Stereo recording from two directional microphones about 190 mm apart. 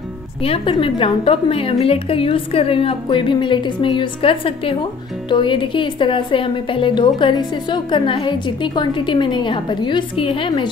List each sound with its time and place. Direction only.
0.4 s a woman's voice: 30° left (ahead or behind)